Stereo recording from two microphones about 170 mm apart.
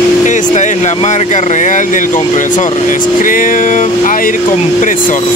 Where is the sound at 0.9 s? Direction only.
40° left (ahead or behind).